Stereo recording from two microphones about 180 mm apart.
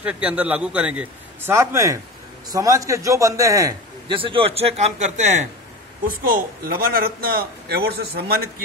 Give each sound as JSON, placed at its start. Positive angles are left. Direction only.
{"t": 0.0, "sound": "a man's voice", "side_deg": -5}
{"t": 6.0, "sound": "a man's voice", "side_deg": -55}